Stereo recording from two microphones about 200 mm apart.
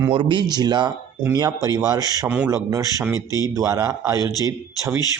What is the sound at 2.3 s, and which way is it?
A man's voice, 5° right (ahead or behind).